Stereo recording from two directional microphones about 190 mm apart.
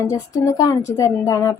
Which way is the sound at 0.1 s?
15° left (ahead or behind).